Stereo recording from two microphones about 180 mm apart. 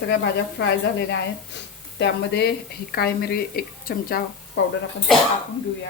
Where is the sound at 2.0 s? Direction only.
65° left (ahead or behind).